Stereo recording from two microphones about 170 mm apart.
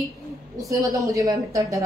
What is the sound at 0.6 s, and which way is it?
A woman's voice, 20° right (ahead or behind).